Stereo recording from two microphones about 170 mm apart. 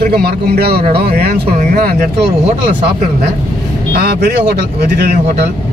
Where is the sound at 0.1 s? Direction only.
65° right (ahead or behind).